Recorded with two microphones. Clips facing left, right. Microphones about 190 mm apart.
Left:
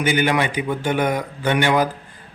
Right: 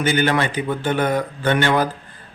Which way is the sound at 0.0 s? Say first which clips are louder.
Even; 15° left (ahead or behind).